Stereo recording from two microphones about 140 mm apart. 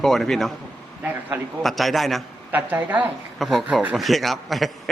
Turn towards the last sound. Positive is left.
turn(degrees=0)  # may be behind; listen again after turning